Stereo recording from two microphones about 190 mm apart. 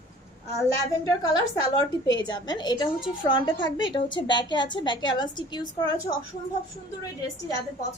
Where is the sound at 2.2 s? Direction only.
25° left (ahead or behind).